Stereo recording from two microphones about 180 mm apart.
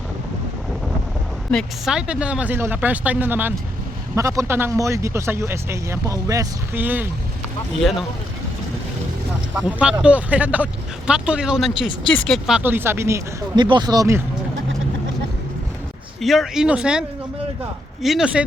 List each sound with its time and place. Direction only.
1.5 s speech: centre (ahead or behind)
7.8 s speech: centre (ahead or behind)
9.6 s speech: 5° right (ahead or behind)
16.2 s speech: centre (ahead or behind)